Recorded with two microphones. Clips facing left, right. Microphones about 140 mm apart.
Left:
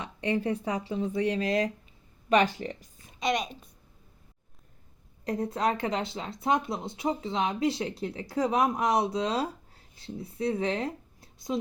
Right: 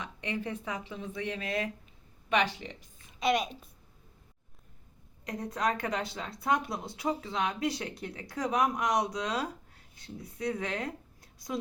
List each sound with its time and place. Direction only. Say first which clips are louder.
0.0 s speech: left 7 dB; 35° left (ahead or behind)
3.2 s a woman's voice: even; 5° right (ahead or behind)
5.2 s speech: left 4 dB; 30° left (ahead or behind)